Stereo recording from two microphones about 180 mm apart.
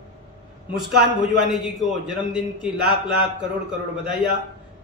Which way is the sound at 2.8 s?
65° right (ahead or behind).